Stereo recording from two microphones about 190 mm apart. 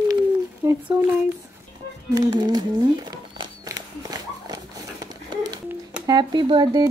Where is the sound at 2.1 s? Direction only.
20° right (ahead or behind).